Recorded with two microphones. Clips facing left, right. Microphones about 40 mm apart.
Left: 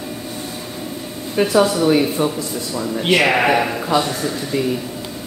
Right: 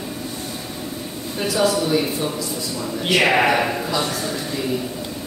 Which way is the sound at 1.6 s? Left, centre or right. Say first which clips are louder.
Left 4 dB; left.